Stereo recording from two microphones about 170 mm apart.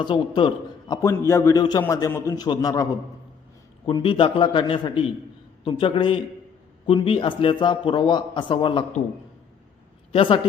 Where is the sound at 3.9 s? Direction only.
30° left (ahead or behind).